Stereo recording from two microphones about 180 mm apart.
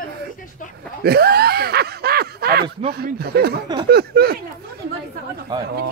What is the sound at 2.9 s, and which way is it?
Speech, 60° right (ahead or behind).